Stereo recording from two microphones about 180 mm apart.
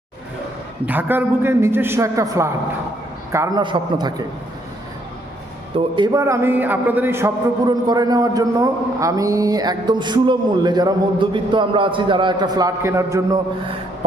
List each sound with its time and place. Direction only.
0.9 s a man's voice: 10° right (ahead or behind)
5.7 s speech: 30° right (ahead or behind)
6.1 s a man's voice: 15° right (ahead or behind)